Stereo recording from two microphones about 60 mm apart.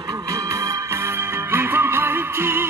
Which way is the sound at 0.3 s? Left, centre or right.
Right.